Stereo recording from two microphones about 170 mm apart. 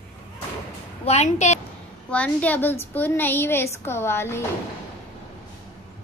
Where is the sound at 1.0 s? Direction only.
40° left (ahead or behind).